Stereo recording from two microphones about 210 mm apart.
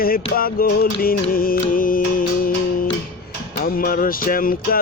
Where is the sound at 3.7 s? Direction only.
40° left (ahead or behind).